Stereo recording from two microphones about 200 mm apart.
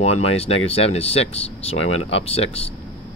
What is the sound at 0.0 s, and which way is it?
Speech, 30° left (ahead or behind).